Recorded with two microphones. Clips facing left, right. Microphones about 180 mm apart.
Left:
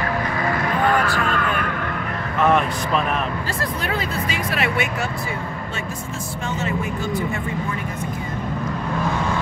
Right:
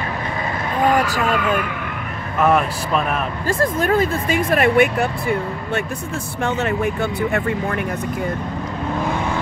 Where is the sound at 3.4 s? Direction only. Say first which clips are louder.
Right 7 dB; 50° right (ahead or behind); by 7.8 s 65° right (ahead or behind).